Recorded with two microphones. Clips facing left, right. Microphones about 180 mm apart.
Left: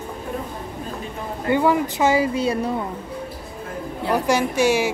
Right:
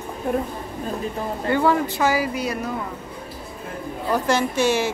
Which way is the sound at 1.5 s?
15° left (ahead or behind).